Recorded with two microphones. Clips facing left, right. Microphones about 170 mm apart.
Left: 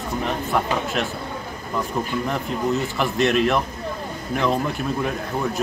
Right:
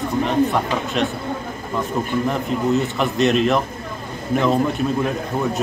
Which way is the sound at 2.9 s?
Centre (ahead or behind).